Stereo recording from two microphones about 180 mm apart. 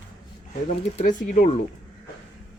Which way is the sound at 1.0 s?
45° left (ahead or behind).